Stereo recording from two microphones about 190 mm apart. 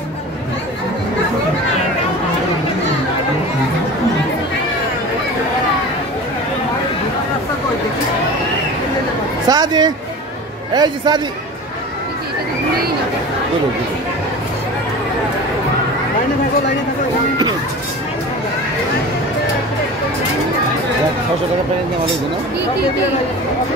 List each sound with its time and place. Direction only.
9.5 s a man's voice: 20° right (ahead or behind)